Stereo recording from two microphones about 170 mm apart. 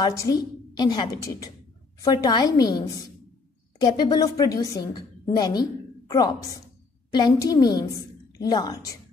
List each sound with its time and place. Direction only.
0.0 s a woman's voice: 25° left (ahead or behind)